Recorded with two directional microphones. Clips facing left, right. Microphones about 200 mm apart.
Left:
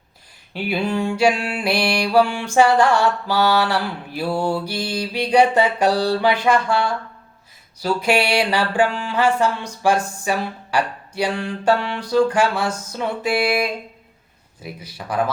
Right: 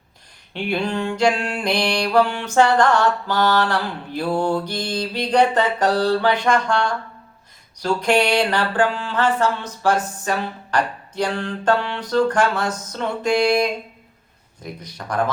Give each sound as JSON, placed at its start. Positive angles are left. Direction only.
{"t": 0.5, "sound": "music", "side_deg": 5}